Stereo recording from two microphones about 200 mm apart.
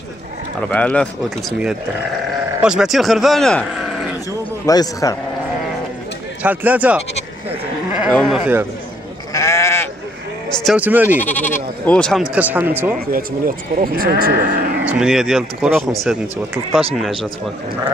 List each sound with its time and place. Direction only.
0.6 s speech: 5° left (ahead or behind)
2.6 s speech: 5° right (ahead or behind)
4.6 s speech: 15° left (ahead or behind)
6.4 s speech: 10° right (ahead or behind)
8.1 s speech: 5° left (ahead or behind)
8.4 s speech: 10° right (ahead or behind)
9.3 s sheep: 15° left (ahead or behind)
10.6 s speech: 5° right (ahead or behind)
11.2 s speech: 10° left (ahead or behind); by 12.9 s 10° right (ahead or behind)
13.7 s speech: 45° right (ahead or behind)
14.9 s speech: 5° right (ahead or behind)